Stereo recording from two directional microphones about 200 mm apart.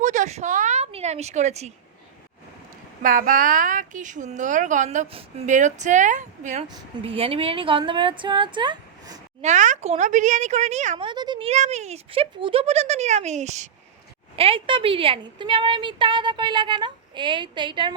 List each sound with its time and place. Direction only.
0.0 s a sound: 40° right (ahead or behind)
3.0 s speech: 45° right (ahead or behind)
6.7 s a woman's voice: 25° right (ahead or behind)
9.4 s a woman's voice: 35° right (ahead or behind)